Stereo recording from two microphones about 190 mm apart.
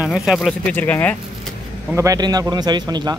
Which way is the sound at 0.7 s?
10° left (ahead or behind).